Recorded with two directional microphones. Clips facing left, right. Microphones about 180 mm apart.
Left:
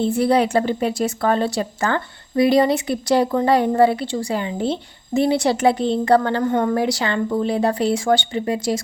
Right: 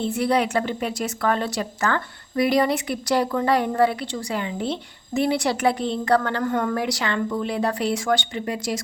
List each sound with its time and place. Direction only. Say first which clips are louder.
0.0 s a woman's voice: left 4 dB; 30° left (ahead or behind)